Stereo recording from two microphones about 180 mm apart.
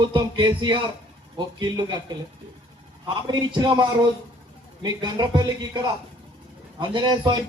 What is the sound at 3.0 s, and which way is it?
Speech, 25° right (ahead or behind).